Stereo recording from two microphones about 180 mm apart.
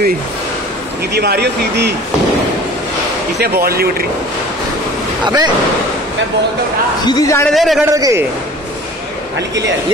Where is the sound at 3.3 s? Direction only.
60° right (ahead or behind).